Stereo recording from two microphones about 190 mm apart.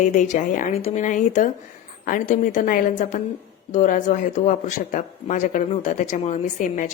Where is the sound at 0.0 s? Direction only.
40° left (ahead or behind).